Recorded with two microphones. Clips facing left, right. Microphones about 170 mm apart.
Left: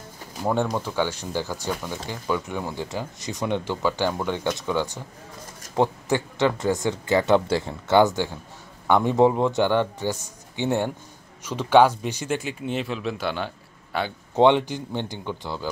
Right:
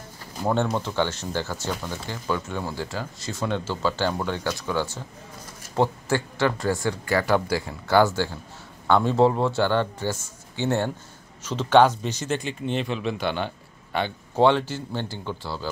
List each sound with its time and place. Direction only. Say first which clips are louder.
0.7 s speech: even; 10° left (ahead or behind)
14.3 s speech: left 2 dB; 20° left (ahead or behind)